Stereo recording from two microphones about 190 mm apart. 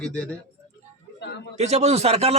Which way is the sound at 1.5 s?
35° right (ahead or behind).